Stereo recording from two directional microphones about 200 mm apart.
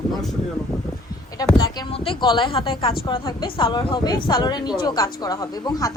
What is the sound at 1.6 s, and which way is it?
Speech, 25° left (ahead or behind).